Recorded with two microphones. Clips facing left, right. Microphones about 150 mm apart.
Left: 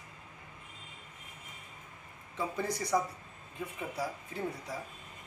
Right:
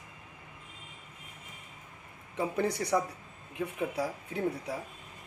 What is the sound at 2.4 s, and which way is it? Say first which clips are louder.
Speech: right 4 dB; 65° right (ahead or behind).